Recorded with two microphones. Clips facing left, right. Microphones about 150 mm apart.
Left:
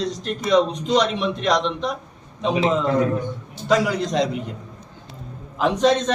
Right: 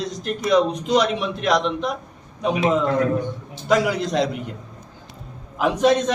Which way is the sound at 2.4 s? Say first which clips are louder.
Left 1 dB; 25° left (ahead or behind).